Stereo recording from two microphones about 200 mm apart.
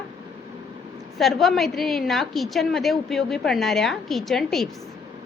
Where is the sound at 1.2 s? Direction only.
Centre (ahead or behind).